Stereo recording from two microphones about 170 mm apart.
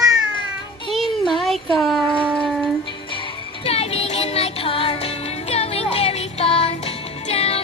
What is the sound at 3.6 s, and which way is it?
Music, 35° left (ahead or behind).